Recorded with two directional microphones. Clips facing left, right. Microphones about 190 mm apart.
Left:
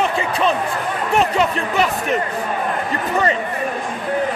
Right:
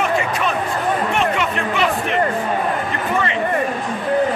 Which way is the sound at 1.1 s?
40° left (ahead or behind).